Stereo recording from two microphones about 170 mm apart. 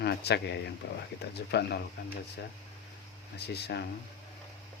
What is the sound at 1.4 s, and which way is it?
Speech, 75° left (ahead or behind).